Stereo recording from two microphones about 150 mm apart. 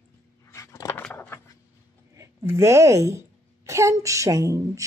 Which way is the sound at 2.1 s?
20° right (ahead or behind).